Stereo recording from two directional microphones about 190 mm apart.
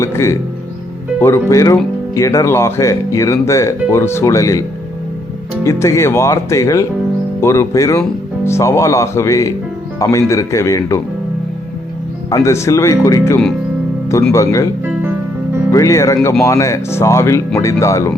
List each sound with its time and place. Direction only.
0.0 s speech: 15° left (ahead or behind)
5.6 s speech: 15° left (ahead or behind)
12.3 s speech: 15° left (ahead or behind)
15.7 s speech: 15° left (ahead or behind)